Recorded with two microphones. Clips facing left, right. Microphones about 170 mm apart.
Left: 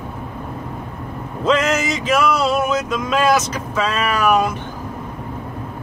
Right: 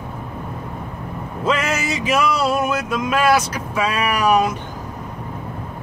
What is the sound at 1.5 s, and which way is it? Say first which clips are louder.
Music: left 4 dB; 10° right (ahead or behind).